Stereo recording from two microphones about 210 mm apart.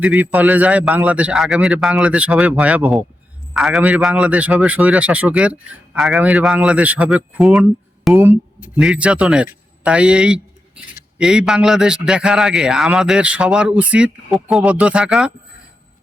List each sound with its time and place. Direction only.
0.0 s a man's voice: 5° right (ahead or behind)